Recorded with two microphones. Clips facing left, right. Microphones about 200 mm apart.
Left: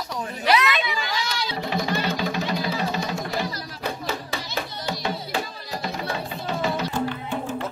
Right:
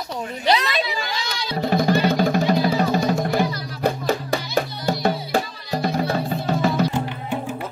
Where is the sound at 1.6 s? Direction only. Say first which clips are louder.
Right 9 dB; 45° right (ahead or behind).